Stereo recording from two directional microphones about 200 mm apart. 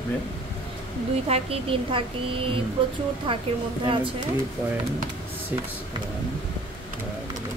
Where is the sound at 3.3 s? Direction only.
25° right (ahead or behind).